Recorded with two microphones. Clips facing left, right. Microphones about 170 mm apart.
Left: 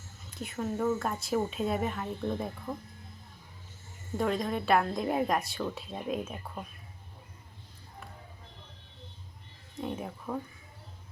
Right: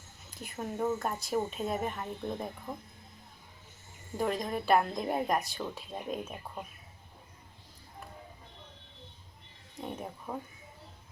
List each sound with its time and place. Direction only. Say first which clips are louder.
0.5 s speech: left 2 dB; 15° right (ahead or behind)
1.0 s a woman's voice: left 2 dB; centre (ahead or behind)
4.2 s a woman's voice: left 2 dB; 5° right (ahead or behind)
9.7 s speech: left 3 dB; centre (ahead or behind)
10.3 s speech: left 4 dB; 10° right (ahead or behind)